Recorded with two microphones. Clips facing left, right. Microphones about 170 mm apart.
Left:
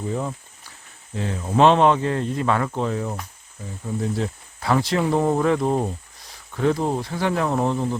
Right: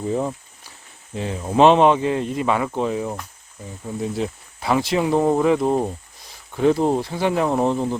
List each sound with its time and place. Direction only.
1.1 s speech: 15° right (ahead or behind)